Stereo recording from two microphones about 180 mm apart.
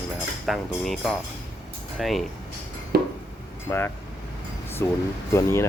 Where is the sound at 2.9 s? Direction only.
60° right (ahead or behind).